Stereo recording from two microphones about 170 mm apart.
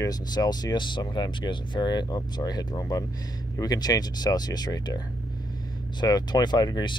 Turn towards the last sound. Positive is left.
turn(degrees=25)  # may be behind; listen again after turning